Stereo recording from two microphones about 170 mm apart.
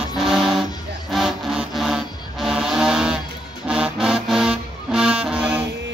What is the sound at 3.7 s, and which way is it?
Music, 5° right (ahead or behind).